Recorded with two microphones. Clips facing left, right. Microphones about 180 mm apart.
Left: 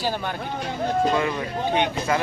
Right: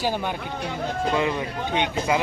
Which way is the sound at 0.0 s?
15° right (ahead or behind).